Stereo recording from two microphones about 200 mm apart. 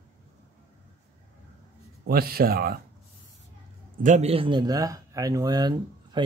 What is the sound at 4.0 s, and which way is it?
Speech, 35° right (ahead or behind).